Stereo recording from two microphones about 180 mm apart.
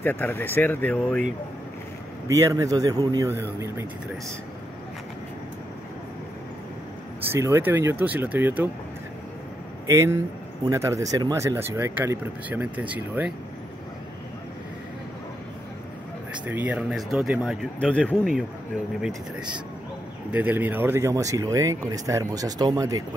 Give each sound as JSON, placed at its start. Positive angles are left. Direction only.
{"t": 0.0, "sound": "speech", "side_deg": 10}
{"t": 2.2, "sound": "a man's voice", "side_deg": -20}
{"t": 7.2, "sound": "speech", "side_deg": -15}
{"t": 9.8, "sound": "speech", "side_deg": -15}
{"t": 16.4, "sound": "speech", "side_deg": -10}
{"t": 20.3, "sound": "speech", "side_deg": -10}